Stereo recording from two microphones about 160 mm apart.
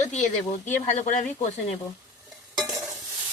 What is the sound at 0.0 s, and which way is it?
Speech, 45° left (ahead or behind).